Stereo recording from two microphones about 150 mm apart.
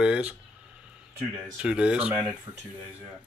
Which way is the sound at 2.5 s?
30° right (ahead or behind).